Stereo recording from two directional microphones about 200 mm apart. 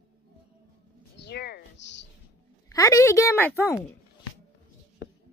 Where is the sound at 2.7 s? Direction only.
15° left (ahead or behind).